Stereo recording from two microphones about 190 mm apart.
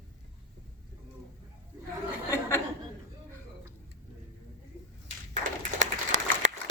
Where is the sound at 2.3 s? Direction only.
15° left (ahead or behind).